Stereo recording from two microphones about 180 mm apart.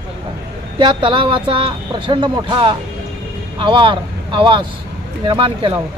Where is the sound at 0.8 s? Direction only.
25° right (ahead or behind).